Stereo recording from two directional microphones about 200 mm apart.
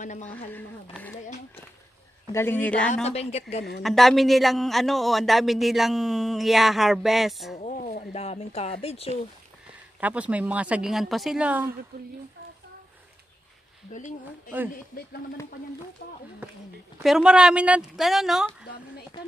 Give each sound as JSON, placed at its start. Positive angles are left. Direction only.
{"t": 0.0, "sound": "a woman's voice", "side_deg": 35}
{"t": 2.3, "sound": "speech", "side_deg": 10}
{"t": 2.9, "sound": "a woman's voice", "side_deg": 30}
{"t": 3.8, "sound": "speech", "side_deg": 0}
{"t": 7.5, "sound": "a sound", "side_deg": 40}
{"t": 8.8, "sound": "a woman's voice", "side_deg": 30}
{"t": 9.9, "sound": "speech", "side_deg": -5}
{"t": 11.9, "sound": "speech", "side_deg": -50}
{"t": 16.0, "sound": "speech", "side_deg": 50}
{"t": 17.0, "sound": "speech", "side_deg": -5}